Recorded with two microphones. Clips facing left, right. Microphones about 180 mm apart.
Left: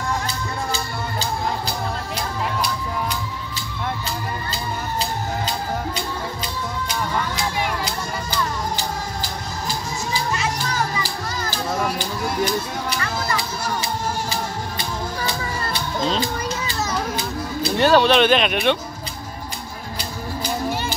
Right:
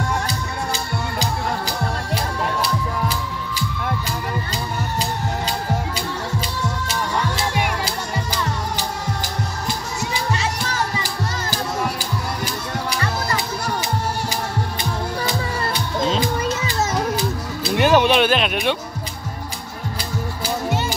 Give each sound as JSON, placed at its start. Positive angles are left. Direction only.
{"t": 11.5, "sound": "music", "side_deg": -5}
{"t": 17.1, "sound": "music", "side_deg": -10}